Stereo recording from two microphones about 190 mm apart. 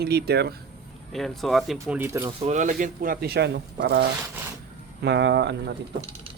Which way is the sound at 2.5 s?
40° right (ahead or behind).